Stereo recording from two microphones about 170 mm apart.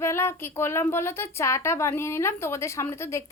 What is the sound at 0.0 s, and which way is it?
A woman's voice, 15° left (ahead or behind).